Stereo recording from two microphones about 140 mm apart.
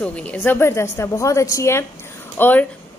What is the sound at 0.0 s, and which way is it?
A woman's voice, 10° left (ahead or behind).